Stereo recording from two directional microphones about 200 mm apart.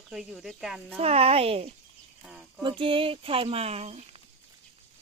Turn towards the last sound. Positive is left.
turn(degrees=-30)  # may be behind; listen again after turning